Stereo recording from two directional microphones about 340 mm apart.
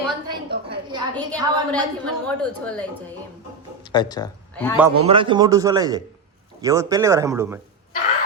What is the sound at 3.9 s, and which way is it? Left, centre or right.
Speech, centre.